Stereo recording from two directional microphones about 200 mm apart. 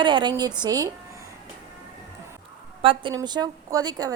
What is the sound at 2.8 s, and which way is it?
A woman's voice, 25° right (ahead or behind).